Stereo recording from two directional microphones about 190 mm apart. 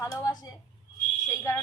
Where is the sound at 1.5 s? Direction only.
15° left (ahead or behind).